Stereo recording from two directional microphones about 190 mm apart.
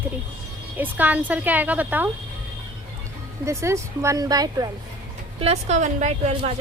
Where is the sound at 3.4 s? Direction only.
15° right (ahead or behind).